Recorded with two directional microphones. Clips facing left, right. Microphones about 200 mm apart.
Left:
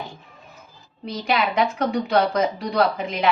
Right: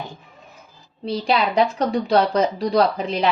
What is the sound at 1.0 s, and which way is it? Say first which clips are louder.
A woman's voice: right 3 dB; 30° right (ahead or behind).